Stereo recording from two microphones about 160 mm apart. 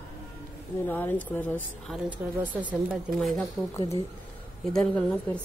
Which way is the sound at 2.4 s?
10° right (ahead or behind).